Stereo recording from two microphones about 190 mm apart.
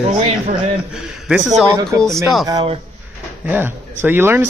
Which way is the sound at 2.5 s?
25° right (ahead or behind).